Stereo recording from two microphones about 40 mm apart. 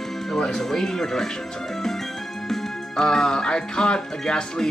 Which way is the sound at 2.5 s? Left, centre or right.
Centre.